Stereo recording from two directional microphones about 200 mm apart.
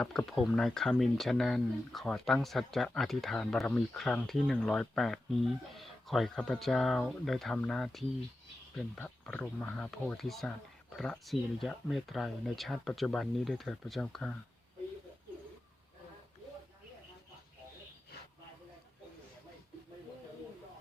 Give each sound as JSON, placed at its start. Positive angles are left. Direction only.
{"t": 0.0, "sound": "speech", "side_deg": 5}